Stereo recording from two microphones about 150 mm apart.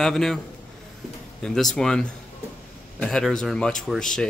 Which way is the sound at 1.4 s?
5° left (ahead or behind).